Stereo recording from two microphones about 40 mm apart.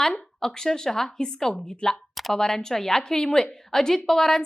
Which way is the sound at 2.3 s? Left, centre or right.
Centre.